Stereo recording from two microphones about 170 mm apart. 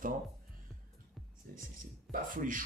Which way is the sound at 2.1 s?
55° right (ahead or behind).